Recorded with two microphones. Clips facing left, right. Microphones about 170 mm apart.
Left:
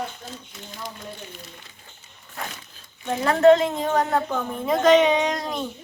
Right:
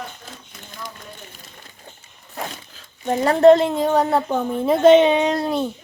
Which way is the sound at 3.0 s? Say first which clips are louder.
Right 3 dB; 40° right (ahead or behind).